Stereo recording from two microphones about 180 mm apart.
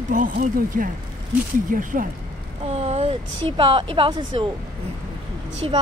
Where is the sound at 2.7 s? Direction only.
35° right (ahead or behind).